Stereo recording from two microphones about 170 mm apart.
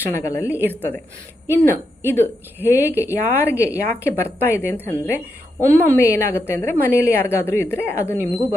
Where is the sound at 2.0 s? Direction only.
10° left (ahead or behind).